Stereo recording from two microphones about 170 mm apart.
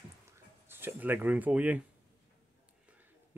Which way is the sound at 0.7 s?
15° right (ahead or behind).